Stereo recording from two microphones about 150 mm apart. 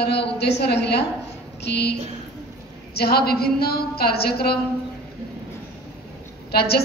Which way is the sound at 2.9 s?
90° left.